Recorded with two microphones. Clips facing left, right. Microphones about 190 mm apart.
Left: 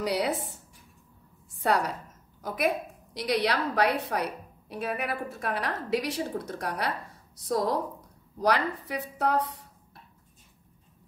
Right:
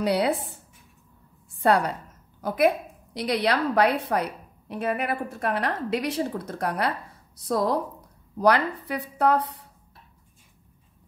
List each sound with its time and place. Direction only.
0.0 s speech: 60° right (ahead or behind)
1.6 s a woman's voice: 60° right (ahead or behind)